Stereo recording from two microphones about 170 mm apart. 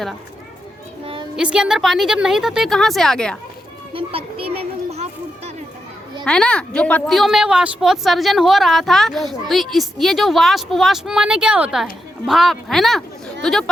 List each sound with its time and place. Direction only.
1.0 s music: 30° right (ahead or behind)
1.4 s a woman's voice: 5° right (ahead or behind)
3.9 s children playing: 30° right (ahead or behind)
6.2 s a woman's voice: 5° left (ahead or behind)